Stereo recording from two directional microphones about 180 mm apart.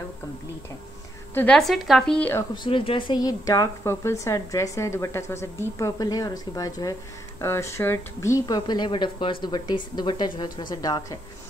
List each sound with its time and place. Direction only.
1.3 s a woman's voice: 10° left (ahead or behind)
2.5 s speech: 30° left (ahead or behind)